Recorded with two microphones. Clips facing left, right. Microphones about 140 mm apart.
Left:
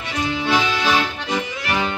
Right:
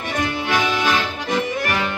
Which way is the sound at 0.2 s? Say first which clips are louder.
Left 2 dB; 50° right (ahead or behind).